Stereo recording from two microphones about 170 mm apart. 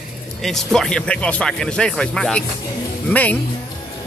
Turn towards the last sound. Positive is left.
turn(degrees=10)  # may be behind; listen again after turning